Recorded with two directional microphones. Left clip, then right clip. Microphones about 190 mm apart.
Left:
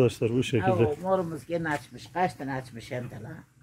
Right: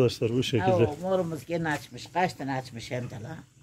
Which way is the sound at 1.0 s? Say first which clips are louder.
Left 1 dB; 60° right (ahead or behind).